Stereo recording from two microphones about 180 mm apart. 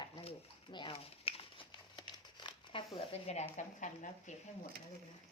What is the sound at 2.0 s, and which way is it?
Crumpling, 25° left (ahead or behind).